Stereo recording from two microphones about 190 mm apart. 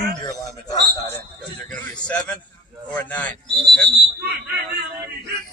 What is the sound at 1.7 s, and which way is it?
A man's voice, 5° left (ahead or behind).